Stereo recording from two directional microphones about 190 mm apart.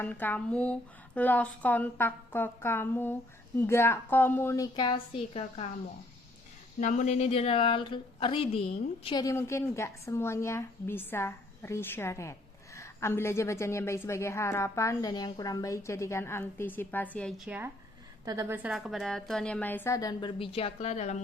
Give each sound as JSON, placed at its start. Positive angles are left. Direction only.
{"t": 0.0, "sound": "a woman's voice", "side_deg": 10}
{"t": 6.7, "sound": "speech", "side_deg": 40}
{"t": 9.2, "sound": "a woman's voice", "side_deg": 15}